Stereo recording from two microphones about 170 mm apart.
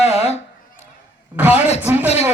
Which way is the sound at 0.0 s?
40° left (ahead or behind).